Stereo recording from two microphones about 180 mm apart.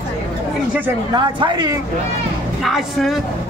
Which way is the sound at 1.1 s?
25° right (ahead or behind).